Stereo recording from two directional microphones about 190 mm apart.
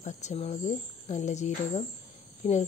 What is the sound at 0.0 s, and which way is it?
Speech, 35° left (ahead or behind).